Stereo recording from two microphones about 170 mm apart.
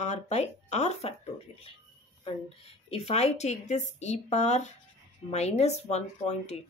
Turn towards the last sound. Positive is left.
turn(degrees=40)  # may be behind; listen again after turning